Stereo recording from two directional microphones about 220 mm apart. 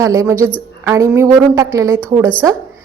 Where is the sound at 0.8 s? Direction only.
10° right (ahead or behind).